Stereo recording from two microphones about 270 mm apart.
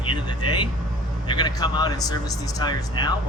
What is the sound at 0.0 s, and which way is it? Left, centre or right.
Vehicle, centre.